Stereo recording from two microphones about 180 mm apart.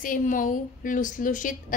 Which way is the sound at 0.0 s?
50° left (ahead or behind).